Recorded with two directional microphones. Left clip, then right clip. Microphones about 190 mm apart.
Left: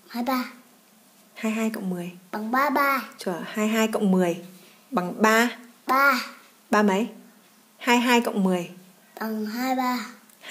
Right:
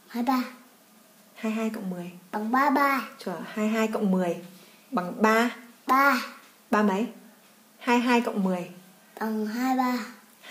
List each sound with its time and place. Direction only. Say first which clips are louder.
0.1 s a child's voice: even; 35° left (ahead or behind)